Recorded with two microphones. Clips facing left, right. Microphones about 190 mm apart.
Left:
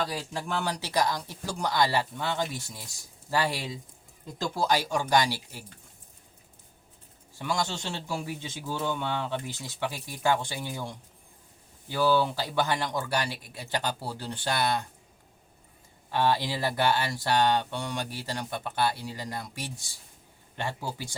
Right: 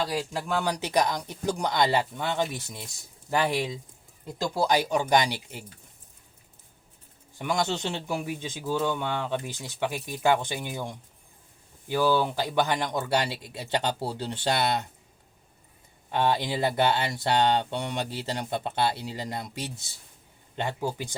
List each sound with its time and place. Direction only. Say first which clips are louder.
0.6 s speech: right 2 dB; 20° right (ahead or behind)
4.7 s speech: right 2 dB; 20° right (ahead or behind)
7.3 s speech: right 3 dB; 20° right (ahead or behind)
16.1 s speech: right 1 dB; 20° right (ahead or behind)